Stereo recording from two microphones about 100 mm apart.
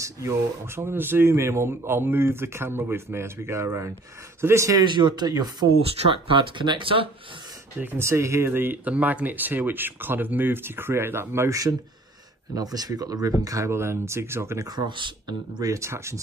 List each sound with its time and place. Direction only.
0.0 s speech: 30° right (ahead or behind)
4.7 s speech: 50° right (ahead or behind)
5.7 s speech: 70° right (ahead or behind)
7.8 s speech: 25° right (ahead or behind)
14.8 s speech: 50° right (ahead or behind)
15.7 s speech: 30° right (ahead or behind)